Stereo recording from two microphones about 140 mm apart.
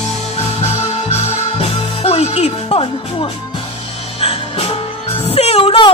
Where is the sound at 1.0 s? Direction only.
50° left (ahead or behind).